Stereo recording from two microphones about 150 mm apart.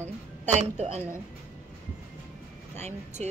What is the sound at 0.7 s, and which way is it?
Speech, 45° right (ahead or behind).